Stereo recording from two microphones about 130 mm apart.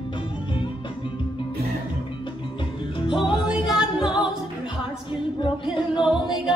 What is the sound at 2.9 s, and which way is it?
Music, 40° left (ahead or behind).